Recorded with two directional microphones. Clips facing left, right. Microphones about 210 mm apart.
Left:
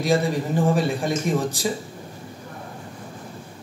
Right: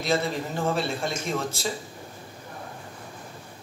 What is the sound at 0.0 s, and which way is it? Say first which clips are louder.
Speech: left 5 dB; 15° left (ahead or behind).